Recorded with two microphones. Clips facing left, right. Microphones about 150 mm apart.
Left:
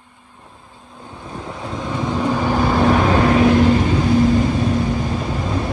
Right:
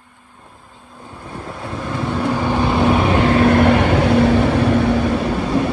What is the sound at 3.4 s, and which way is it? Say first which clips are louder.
Vehicle: right 1 dB; 65° right (ahead or behind).